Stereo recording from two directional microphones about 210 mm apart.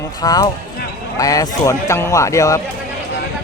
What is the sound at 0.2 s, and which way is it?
Speech, 20° left (ahead or behind).